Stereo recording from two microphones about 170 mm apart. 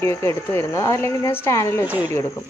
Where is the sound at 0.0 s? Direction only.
15° left (ahead or behind).